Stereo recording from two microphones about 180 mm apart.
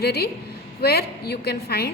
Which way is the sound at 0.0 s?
60° left (ahead or behind).